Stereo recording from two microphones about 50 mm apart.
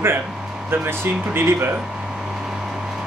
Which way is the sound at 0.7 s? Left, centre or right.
Right.